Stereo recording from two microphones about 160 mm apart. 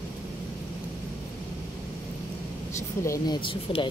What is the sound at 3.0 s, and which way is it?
Speech, 20° left (ahead or behind).